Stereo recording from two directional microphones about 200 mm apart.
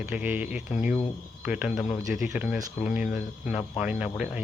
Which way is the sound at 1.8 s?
40° left (ahead or behind).